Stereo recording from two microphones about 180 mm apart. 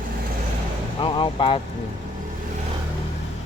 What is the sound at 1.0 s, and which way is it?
Speech, 30° left (ahead or behind).